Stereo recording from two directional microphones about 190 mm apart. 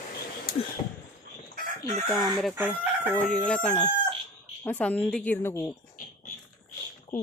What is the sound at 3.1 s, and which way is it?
Chicken, 5° left (ahead or behind).